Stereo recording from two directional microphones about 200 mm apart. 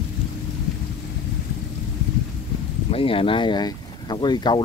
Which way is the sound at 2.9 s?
25° left (ahead or behind).